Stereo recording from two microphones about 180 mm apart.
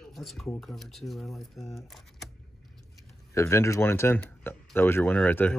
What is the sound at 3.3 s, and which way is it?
Speech, 15° left (ahead or behind).